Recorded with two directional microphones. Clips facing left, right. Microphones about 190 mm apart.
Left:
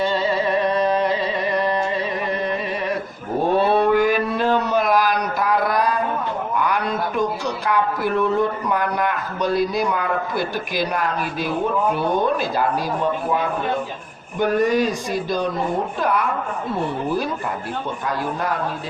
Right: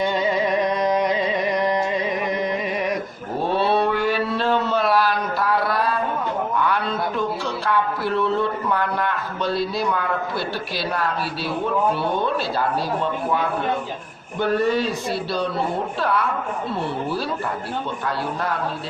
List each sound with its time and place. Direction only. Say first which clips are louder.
0.0 s music: left 1 dB; 15° right (ahead or behind)
3.6 s mantra: left 1 dB; 45° left (ahead or behind)
3.9 s a sound: left 4 dB; 15° left (ahead or behind)
8.4 s a man's voice: left 2 dB; 15° left (ahead or behind)
14.3 s a man's voice: left 2 dB; 15° left (ahead or behind)